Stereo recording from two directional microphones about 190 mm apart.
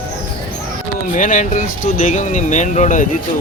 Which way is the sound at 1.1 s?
40° left (ahead or behind).